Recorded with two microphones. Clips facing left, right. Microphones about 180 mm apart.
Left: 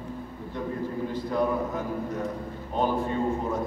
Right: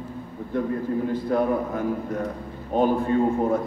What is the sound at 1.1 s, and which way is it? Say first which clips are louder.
A man's voice: right 3 dB; 55° right (ahead or behind).